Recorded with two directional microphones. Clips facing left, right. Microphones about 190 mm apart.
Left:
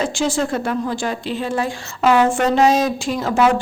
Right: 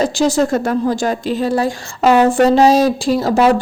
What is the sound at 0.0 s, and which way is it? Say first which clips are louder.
Speech: right 5 dB; 40° right (ahead or behind).